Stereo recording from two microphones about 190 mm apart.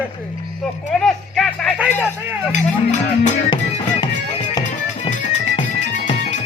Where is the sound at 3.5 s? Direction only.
25° left (ahead or behind).